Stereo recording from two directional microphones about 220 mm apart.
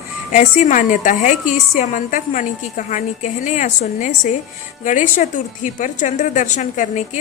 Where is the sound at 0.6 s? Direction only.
35° left (ahead or behind).